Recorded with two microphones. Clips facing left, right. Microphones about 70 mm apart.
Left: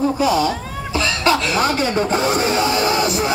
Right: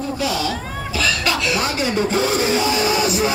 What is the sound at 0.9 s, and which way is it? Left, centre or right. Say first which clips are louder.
Cough: left 4 dB; left.